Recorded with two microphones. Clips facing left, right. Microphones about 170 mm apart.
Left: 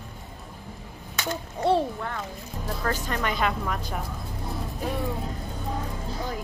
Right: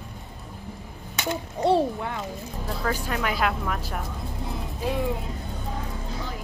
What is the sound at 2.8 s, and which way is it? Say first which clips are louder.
Speech: right 1 dB; 5° right (ahead or behind).